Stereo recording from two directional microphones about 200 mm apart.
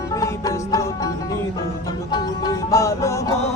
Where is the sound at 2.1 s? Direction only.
20° left (ahead or behind).